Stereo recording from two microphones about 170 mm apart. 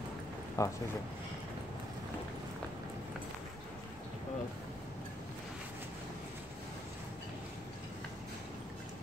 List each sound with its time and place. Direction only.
0.6 s speech: 20° left (ahead or behind)